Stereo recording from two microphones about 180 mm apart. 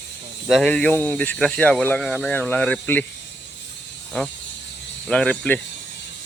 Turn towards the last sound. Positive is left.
turn(degrees=5)  # may be behind; listen again after turning